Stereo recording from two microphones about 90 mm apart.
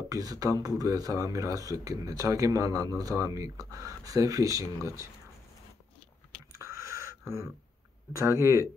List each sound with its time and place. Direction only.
0.1 s speech: 40° right (ahead or behind)
6.5 s a sound: 30° right (ahead or behind)
8.1 s speech: 35° right (ahead or behind)